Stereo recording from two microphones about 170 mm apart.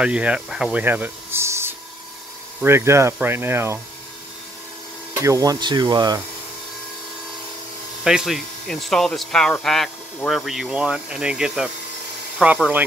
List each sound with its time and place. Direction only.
0.0 s speech: 5° right (ahead or behind)
5.2 s speech: 20° right (ahead or behind)
8.0 s speech: 5° right (ahead or behind)